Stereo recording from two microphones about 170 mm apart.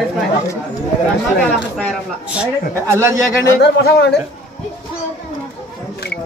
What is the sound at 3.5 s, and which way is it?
Speech, 85° left.